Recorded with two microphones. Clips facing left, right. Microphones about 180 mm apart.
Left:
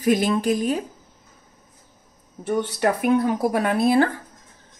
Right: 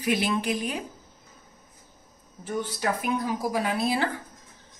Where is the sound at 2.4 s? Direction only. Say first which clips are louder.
Left 7 dB; 70° left (ahead or behind); by 4.1 s 55° left (ahead or behind).